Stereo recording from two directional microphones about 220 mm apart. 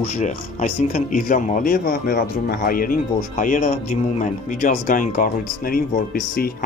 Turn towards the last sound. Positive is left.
turn(degrees=40)  # may be behind; listen again after turning